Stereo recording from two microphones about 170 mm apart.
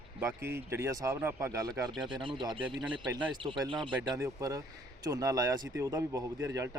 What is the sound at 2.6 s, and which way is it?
Speech, 5° right (ahead or behind).